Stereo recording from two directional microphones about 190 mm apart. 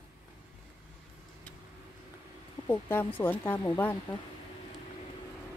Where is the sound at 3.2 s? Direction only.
10° left (ahead or behind).